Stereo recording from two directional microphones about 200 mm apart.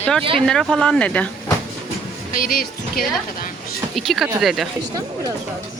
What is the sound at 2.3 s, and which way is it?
Speech, 45° left (ahead or behind).